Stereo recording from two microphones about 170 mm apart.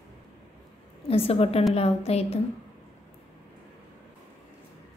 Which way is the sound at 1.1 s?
35° left (ahead or behind).